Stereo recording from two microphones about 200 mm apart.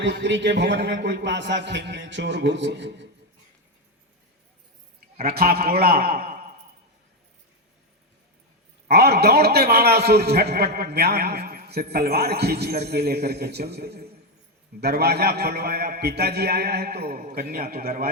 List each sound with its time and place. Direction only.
0.0 s a man's voice: 65° right (ahead or behind)
5.1 s a man's voice: 50° right (ahead or behind)
8.9 s a man's voice: 50° right (ahead or behind)